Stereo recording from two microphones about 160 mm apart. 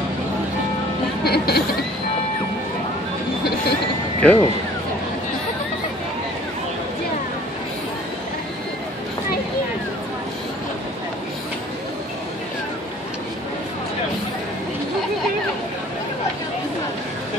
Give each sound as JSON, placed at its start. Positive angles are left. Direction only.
{"t": 1.2, "sound": "speech", "side_deg": 80}
{"t": 4.2, "sound": "speech", "side_deg": 10}